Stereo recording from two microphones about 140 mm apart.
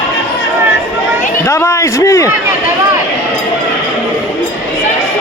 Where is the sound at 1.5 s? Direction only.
20° left (ahead or behind).